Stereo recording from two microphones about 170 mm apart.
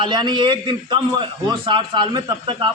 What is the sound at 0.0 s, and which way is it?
A man's voice, 25° right (ahead or behind).